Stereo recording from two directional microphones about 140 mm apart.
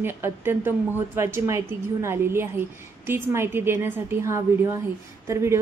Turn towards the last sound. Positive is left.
turn(degrees=-20)  # may be behind; listen again after turning